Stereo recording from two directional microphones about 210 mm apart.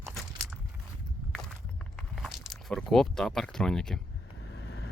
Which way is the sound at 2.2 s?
Centre (ahead or behind).